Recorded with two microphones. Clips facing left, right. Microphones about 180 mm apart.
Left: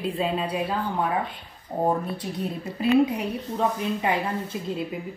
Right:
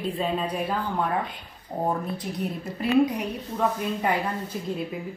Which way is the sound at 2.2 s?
30° left (ahead or behind).